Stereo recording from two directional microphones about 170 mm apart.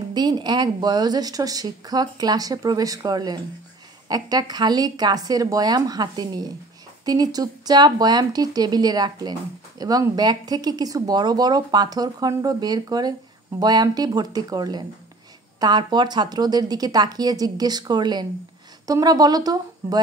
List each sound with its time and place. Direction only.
0.1 s speech: 25° right (ahead or behind)